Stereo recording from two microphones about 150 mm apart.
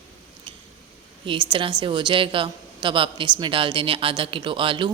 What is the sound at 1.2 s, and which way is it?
A woman's voice, 35° right (ahead or behind).